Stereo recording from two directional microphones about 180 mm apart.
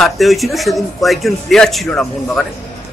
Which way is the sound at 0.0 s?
Centre (ahead or behind).